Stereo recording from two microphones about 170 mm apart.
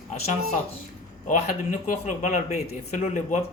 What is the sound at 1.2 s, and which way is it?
A man's voice, 50° left (ahead or behind).